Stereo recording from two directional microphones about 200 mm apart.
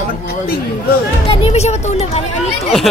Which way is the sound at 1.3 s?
30° left (ahead or behind).